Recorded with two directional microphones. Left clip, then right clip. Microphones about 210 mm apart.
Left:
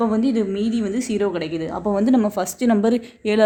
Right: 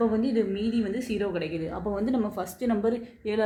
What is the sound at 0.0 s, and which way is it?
A woman's voice, 50° left (ahead or behind).